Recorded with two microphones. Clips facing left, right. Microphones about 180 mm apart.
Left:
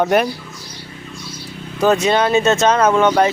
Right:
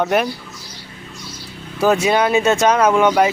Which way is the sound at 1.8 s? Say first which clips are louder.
Left 1 dB; 10° right (ahead or behind).